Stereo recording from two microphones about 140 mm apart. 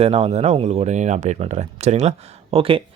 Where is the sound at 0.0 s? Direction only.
45° right (ahead or behind).